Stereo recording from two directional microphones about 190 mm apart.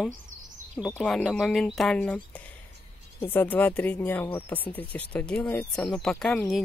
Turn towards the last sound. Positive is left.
turn(degrees=0)  # may be behind; listen again after turning